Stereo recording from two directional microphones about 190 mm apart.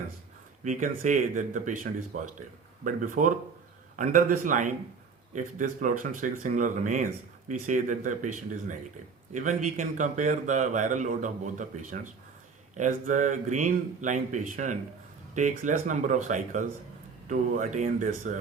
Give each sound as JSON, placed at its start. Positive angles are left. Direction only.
{"t": 0.6, "sound": "speech", "side_deg": -40}